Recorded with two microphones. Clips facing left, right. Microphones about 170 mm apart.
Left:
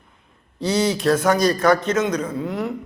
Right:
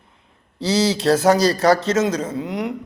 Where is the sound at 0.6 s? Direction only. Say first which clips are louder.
Right 1 dB; 80° right.